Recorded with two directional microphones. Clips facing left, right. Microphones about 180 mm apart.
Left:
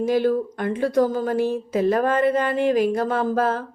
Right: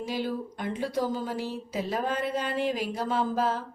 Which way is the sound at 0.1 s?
55° left (ahead or behind).